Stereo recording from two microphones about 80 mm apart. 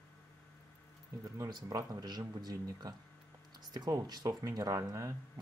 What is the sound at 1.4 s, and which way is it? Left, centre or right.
Speech, right.